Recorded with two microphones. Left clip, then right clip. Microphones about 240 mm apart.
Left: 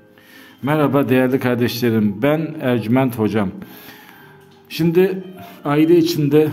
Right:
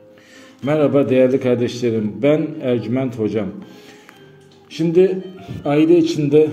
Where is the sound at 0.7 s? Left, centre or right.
Left.